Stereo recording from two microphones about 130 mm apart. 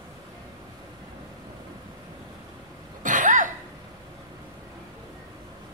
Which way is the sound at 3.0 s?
75° right (ahead or behind).